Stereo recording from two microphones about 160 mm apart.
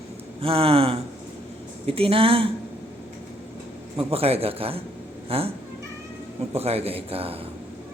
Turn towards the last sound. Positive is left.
turn(degrees=-35)  # may be behind; listen again after turning